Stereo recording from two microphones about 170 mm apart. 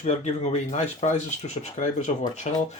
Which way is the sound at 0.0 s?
40° left (ahead or behind).